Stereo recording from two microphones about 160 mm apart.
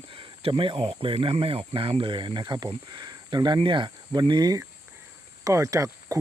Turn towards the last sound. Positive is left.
turn(degrees=-20)  # may be behind; listen again after turning